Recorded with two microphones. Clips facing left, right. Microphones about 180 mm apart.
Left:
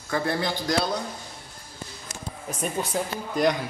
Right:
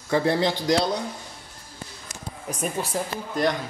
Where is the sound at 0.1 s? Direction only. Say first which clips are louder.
Right 5 dB; 30° right (ahead or behind).